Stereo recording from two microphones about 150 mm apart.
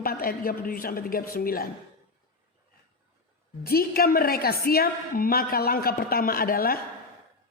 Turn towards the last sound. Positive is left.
turn(degrees=75)  # may be behind; listen again after turning